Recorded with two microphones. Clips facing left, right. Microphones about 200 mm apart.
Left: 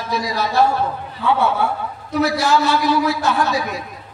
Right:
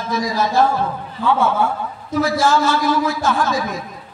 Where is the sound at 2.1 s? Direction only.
65° left (ahead or behind).